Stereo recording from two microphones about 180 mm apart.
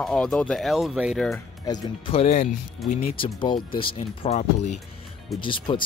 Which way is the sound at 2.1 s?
35° left (ahead or behind).